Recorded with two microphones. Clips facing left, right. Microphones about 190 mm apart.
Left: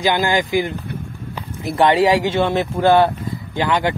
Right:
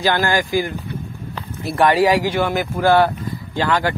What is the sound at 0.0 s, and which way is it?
Speech, 15° left (ahead or behind).